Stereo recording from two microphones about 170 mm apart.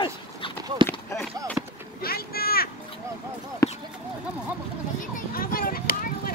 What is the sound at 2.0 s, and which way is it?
Boat, 65° left (ahead or behind).